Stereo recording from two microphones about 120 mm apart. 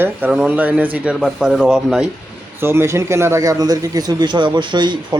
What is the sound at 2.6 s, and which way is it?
A man's voice, 20° right (ahead or behind).